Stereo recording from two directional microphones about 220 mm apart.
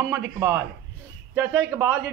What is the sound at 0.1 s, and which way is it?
A man's voice, 15° right (ahead or behind).